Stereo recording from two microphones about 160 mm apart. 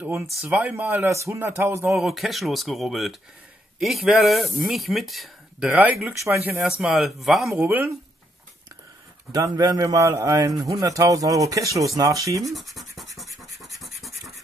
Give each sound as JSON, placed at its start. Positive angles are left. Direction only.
{"t": 0.4, "sound": "speech", "side_deg": -10}
{"t": 1.9, "sound": "speech", "side_deg": 0}
{"t": 6.8, "sound": "speech", "side_deg": 0}
{"t": 7.5, "sound": "speech", "side_deg": -15}
{"t": 9.3, "sound": "speech", "side_deg": -20}
{"t": 12.4, "sound": "scratch", "side_deg": 0}